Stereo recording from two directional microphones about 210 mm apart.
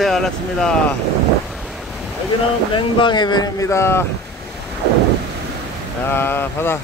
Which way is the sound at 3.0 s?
20° left (ahead or behind).